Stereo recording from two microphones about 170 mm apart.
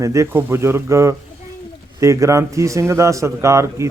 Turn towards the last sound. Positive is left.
turn(degrees=-15)  # may be behind; listen again after turning